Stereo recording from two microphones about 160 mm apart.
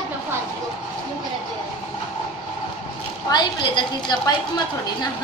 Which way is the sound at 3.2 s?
25° left (ahead or behind).